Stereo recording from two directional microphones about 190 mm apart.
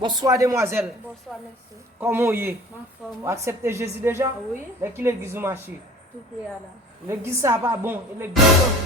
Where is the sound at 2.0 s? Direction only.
10° right (ahead or behind).